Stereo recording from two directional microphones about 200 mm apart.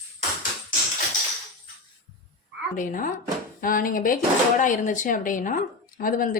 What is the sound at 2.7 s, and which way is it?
Speech, 40° left (ahead or behind).